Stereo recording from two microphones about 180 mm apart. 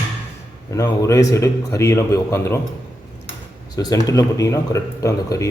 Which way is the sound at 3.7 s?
20° left (ahead or behind).